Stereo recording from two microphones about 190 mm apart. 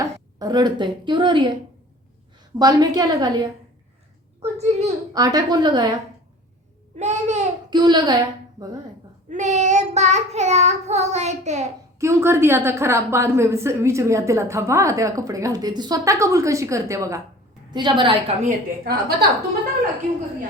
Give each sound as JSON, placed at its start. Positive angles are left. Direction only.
{"t": 0.0, "sound": "a woman's voice", "side_deg": -20}
{"t": 2.6, "sound": "a woman's voice", "side_deg": -20}
{"t": 4.4, "sound": "a woman's voice", "side_deg": -35}
{"t": 5.1, "sound": "a woman's voice", "side_deg": -20}
{"t": 6.9, "sound": "child singing", "side_deg": -40}
{"t": 7.7, "sound": "a woman's voice", "side_deg": -25}
{"t": 9.3, "sound": "child singing", "side_deg": -40}
{"t": 11.9, "sound": "a woman's voice", "side_deg": -15}
{"t": 18.4, "sound": "a woman's voice", "side_deg": -50}